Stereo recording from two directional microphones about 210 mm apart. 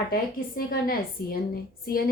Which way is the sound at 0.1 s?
45° left (ahead or behind).